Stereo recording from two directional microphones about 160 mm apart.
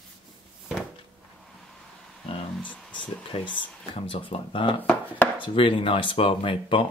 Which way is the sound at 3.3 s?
35° left (ahead or behind).